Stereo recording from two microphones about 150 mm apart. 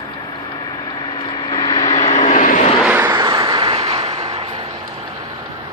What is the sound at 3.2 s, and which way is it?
Vehicle, 30° right (ahead or behind).